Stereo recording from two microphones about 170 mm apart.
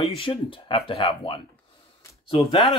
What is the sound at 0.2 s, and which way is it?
Speech, 30° left (ahead or behind).